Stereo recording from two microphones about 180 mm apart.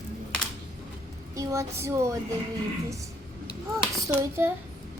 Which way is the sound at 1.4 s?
15° right (ahead or behind).